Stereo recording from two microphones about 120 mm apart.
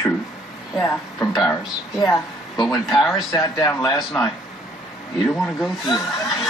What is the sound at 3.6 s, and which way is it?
Speech, 25° left (ahead or behind).